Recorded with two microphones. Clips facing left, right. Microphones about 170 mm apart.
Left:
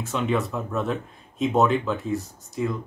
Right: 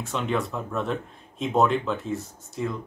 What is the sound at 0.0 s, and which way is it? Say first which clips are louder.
Speech: left 2 dB; centre (ahead or behind).